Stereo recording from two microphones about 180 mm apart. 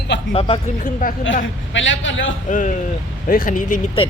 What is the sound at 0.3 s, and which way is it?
Speech, 30° left (ahead or behind).